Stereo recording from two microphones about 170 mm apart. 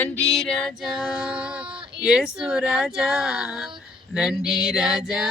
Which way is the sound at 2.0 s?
5° right (ahead or behind).